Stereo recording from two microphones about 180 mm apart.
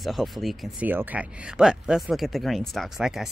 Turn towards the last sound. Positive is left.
turn(degrees=0)  # may be behind; listen again after turning